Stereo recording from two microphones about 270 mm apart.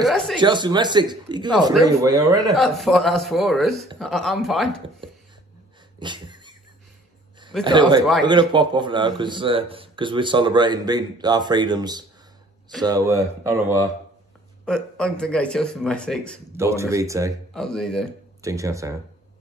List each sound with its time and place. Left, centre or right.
0.4 s speech: centre
2.5 s a man's voice: centre
5.9 s a sound: centre
7.6 s speech: centre
14.6 s a man's voice: centre
16.5 s speech: centre
17.6 s a man's voice: centre
18.4 s speech: centre